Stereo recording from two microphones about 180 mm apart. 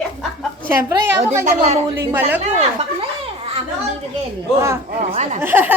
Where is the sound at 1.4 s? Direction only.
40° right (ahead or behind).